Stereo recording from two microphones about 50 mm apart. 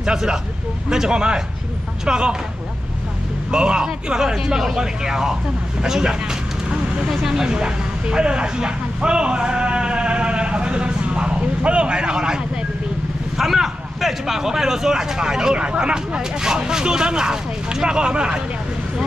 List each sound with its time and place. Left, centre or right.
0.0 s speech: centre
3.5 s speech: centre
7.1 s a sound: centre
13.4 s speech: centre